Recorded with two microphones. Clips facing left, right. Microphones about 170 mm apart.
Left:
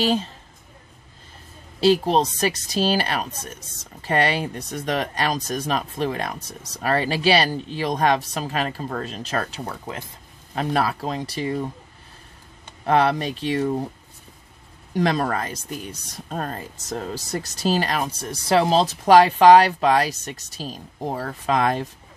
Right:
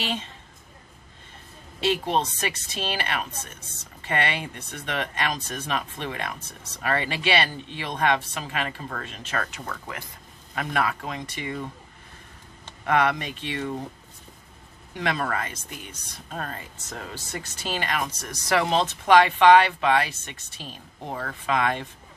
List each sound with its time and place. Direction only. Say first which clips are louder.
0.0 s speech: left 9 dB; 40° left (ahead or behind)
1.8 s speech: left 6 dB; 35° left (ahead or behind)
12.8 s speech: left 4 dB; 30° left (ahead or behind)
15.0 s speech: left 6 dB; 35° left (ahead or behind)